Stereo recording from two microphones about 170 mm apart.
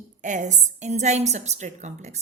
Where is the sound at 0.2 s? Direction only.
45° right (ahead or behind).